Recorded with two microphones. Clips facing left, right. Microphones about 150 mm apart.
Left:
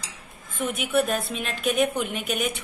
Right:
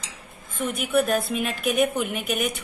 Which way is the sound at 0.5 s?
Centre (ahead or behind).